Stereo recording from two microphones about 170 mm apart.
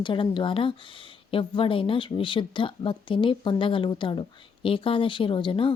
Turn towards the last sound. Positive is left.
turn(degrees=30)  # may be behind; listen again after turning